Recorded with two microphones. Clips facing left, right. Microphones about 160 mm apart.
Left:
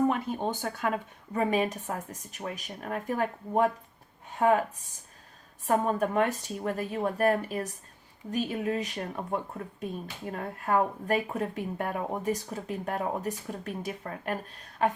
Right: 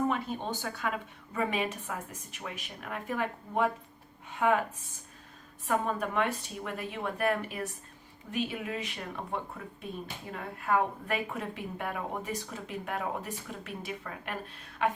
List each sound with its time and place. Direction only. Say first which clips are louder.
0.1 s a woman's voice: left 3 dB; 50° left (ahead or behind)
5.6 s a woman's voice: left 4 dB; 40° left (ahead or behind)